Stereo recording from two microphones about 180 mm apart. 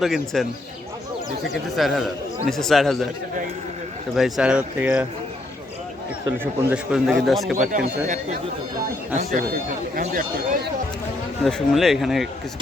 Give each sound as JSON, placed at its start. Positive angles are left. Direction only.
{"t": 0.0, "sound": "speech", "side_deg": 0}
{"t": 1.7, "sound": "speech", "side_deg": 0}
{"t": 4.1, "sound": "speech", "side_deg": 0}
{"t": 6.4, "sound": "speech", "side_deg": -10}
{"t": 7.2, "sound": "speech", "side_deg": 0}
{"t": 7.7, "sound": "speech", "side_deg": -45}
{"t": 11.4, "sound": "speech", "side_deg": 0}